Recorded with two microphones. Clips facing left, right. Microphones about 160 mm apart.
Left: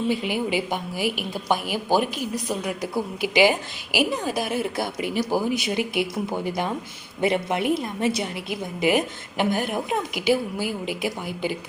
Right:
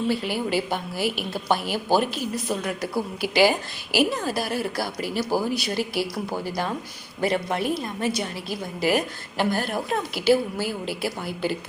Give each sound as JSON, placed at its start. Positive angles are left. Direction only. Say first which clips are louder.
{"t": 0.1, "sound": "a woman's voice", "louder": "even", "side_deg": 15}